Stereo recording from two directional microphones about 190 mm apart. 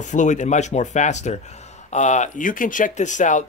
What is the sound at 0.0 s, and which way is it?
Speech, 40° left (ahead or behind).